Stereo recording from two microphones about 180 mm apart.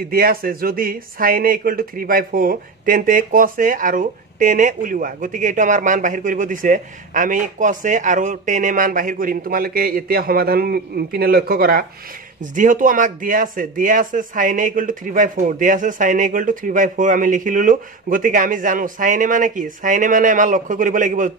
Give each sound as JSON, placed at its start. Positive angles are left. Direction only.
{"t": 0.1, "sound": "speech", "side_deg": -55}
{"t": 12.4, "sound": "speech", "side_deg": -45}